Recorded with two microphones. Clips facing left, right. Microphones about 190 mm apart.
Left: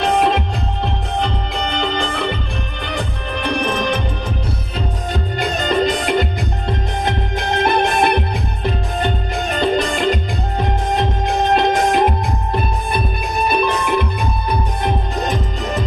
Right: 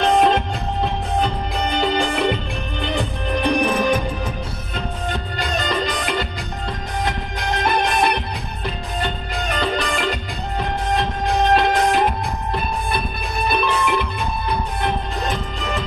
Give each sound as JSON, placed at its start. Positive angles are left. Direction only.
{"t": 0.0, "sound": "music", "side_deg": 0}
{"t": 5.6, "sound": "music", "side_deg": 55}
{"t": 7.5, "sound": "music", "side_deg": 25}
{"t": 11.5, "sound": "music", "side_deg": 20}
{"t": 13.5, "sound": "music", "side_deg": 15}